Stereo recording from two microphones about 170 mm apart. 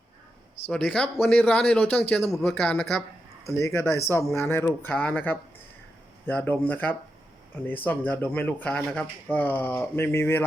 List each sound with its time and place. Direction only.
0.7 s speech: 5° left (ahead or behind)
3.5 s speech: 15° left (ahead or behind)